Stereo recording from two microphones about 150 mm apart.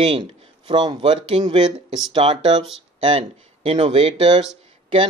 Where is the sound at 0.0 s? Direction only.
40° right (ahead or behind).